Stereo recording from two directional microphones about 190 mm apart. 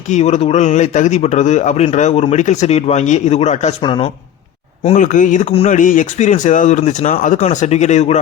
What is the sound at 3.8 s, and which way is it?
Speech, 25° left (ahead or behind).